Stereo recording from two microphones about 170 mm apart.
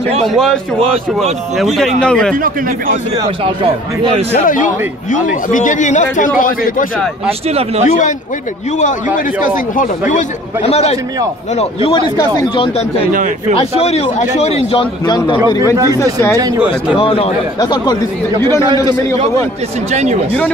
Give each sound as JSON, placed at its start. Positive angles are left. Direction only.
{"t": 0.1, "sound": "speech", "side_deg": -40}
{"t": 1.8, "sound": "a man's voice", "side_deg": 5}
{"t": 4.4, "sound": "speech", "side_deg": 55}
{"t": 7.2, "sound": "speech", "side_deg": -35}
{"t": 8.7, "sound": "a man's voice", "side_deg": 50}
{"t": 13.1, "sound": "speech", "side_deg": -50}
{"t": 13.6, "sound": "a man's voice", "side_deg": 35}
{"t": 15.9, "sound": "a man's voice", "side_deg": 15}
{"t": 16.5, "sound": "speech", "side_deg": -5}
{"t": 17.0, "sound": "a man's voice", "side_deg": 30}
{"t": 19.9, "sound": "speech", "side_deg": -40}